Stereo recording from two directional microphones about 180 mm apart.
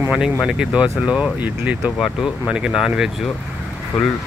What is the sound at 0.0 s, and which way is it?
Speech, 5° right (ahead or behind).